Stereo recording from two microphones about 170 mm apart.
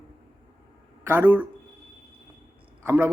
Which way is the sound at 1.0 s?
10° right (ahead or behind).